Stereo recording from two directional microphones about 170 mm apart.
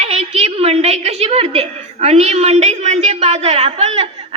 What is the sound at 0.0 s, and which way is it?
A woman's voice, 40° right (ahead or behind).